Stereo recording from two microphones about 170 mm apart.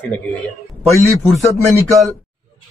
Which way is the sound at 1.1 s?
Centre (ahead or behind).